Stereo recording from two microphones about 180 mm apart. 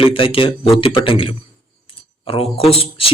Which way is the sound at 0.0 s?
30° left (ahead or behind).